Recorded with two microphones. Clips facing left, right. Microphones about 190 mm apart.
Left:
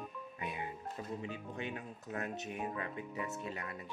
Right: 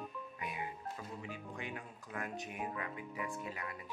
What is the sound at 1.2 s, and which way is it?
Speech, 25° left (ahead or behind).